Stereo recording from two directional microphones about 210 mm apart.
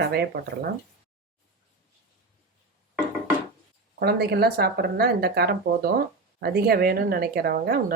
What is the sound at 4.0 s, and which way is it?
Speech, 50° right (ahead or behind).